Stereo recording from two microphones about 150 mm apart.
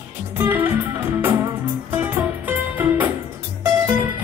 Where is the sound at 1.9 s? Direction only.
10° right (ahead or behind).